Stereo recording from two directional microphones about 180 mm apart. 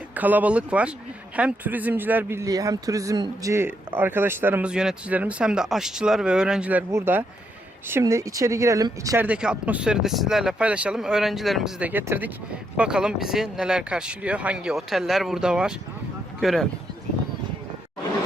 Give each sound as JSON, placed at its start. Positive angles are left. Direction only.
{"t": 0.1, "sound": "speech", "side_deg": -10}
{"t": 9.2, "sound": "speech", "side_deg": -5}